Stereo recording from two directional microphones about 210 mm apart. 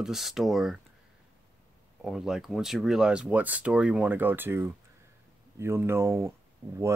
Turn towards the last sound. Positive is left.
turn(degrees=-15)  # may be behind; listen again after turning